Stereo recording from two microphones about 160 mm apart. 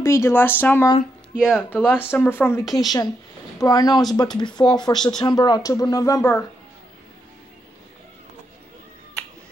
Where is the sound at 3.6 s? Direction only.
25° left (ahead or behind).